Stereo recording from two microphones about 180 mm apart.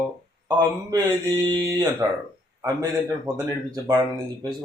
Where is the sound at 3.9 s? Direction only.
25° right (ahead or behind).